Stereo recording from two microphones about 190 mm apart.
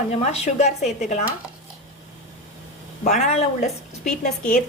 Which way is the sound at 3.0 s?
40° left (ahead or behind).